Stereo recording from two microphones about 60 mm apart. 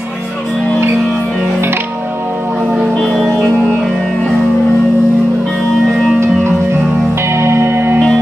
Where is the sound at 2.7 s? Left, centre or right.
Centre.